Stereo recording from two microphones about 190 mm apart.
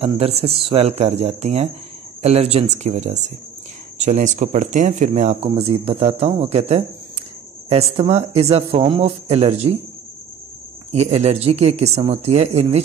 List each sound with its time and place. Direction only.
0.0 s speech: 30° right (ahead or behind)
10.9 s speech: 35° right (ahead or behind)